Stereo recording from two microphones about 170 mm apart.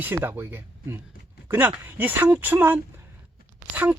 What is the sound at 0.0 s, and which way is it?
Speech, 10° right (ahead or behind).